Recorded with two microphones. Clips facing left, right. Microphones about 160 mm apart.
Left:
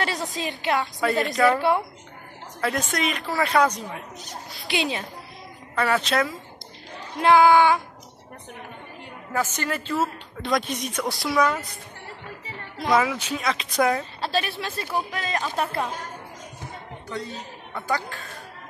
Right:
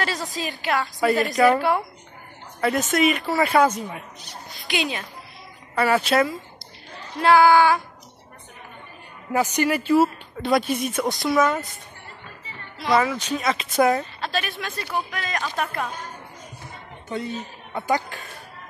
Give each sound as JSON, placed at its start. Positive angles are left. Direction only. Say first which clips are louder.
{"t": 0.0, "sound": "speech", "louder": "even", "side_deg": 20}
{"t": 1.0, "sound": "a woman's voice", "louder": "right 4 dB", "side_deg": 0}
{"t": 1.6, "sound": "speech", "louder": "even", "side_deg": 25}
{"t": 2.6, "sound": "a woman's voice", "louder": "right 5 dB", "side_deg": 0}
{"t": 4.6, "sound": "speech", "louder": "even", "side_deg": 25}
{"t": 5.8, "sound": "a woman's voice", "louder": "right 3 dB", "side_deg": -5}
{"t": 7.2, "sound": "speech", "louder": "right 1 dB", "side_deg": 20}
{"t": 9.3, "sound": "a woman's voice", "louder": "right 6 dB", "side_deg": -15}
{"t": 12.9, "sound": "a woman's voice", "louder": "right 1 dB", "side_deg": 5}
{"t": 14.2, "sound": "speech", "louder": "left 2 dB", "side_deg": 30}
{"t": 17.7, "sound": "a woman's voice", "louder": "right 4 dB", "side_deg": -20}